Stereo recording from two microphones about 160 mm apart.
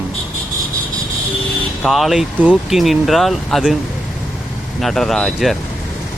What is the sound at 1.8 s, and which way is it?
Speech, centre (ahead or behind).